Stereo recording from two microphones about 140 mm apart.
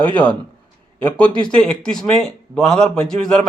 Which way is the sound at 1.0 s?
10° left (ahead or behind).